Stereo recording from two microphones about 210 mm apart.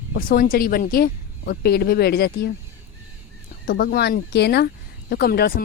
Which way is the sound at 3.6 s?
50° left (ahead or behind).